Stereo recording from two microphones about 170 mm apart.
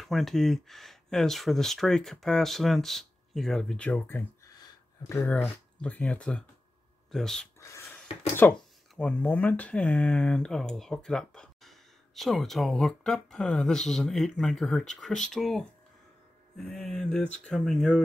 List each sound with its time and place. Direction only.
0.0 s speech: centre (ahead or behind)
7.6 s a sound: 15° left (ahead or behind)
8.4 s speech: 10° left (ahead or behind)